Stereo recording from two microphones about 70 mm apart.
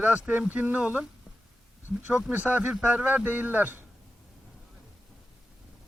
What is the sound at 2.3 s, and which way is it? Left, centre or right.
Speech, right.